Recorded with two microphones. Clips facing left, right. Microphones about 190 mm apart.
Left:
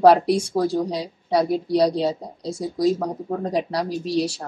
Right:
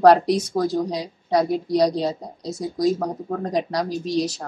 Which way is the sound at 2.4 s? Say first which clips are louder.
Left 1 dB; 25° left (ahead or behind).